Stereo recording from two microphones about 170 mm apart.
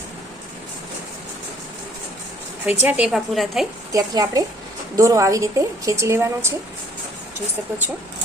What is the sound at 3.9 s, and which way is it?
A woman's voice, 20° right (ahead or behind).